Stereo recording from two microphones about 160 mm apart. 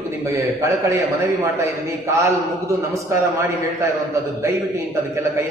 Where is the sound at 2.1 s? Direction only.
20° right (ahead or behind).